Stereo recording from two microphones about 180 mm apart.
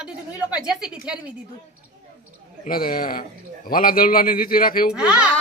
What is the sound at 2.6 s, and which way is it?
A man's voice, 55° left (ahead or behind).